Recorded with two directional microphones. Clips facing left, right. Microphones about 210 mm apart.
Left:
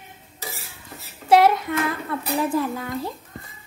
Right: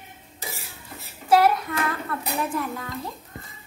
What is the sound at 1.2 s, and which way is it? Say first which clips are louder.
Child singing: left 3 dB; 25° left (ahead or behind).